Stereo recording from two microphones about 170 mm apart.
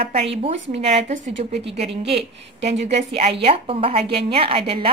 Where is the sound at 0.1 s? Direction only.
35° right (ahead or behind).